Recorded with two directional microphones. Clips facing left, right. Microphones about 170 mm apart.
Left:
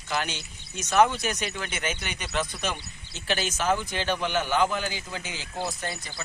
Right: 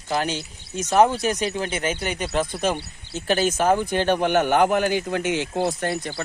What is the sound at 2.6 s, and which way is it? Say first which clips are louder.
Speech: right 8 dB; 45° right (ahead or behind).